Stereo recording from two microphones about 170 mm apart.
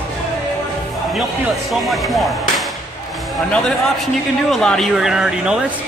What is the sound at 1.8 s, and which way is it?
Speech, centre (ahead or behind).